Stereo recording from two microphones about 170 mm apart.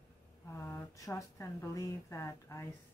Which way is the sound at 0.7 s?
20° left (ahead or behind).